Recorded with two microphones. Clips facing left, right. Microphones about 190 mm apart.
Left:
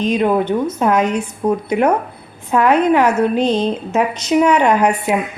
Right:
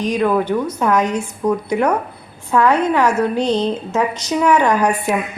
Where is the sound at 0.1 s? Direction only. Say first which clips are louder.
Even; 20° left (ahead or behind).